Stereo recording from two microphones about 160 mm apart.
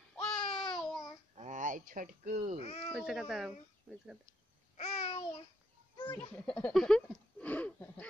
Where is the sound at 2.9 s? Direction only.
5° right (ahead or behind).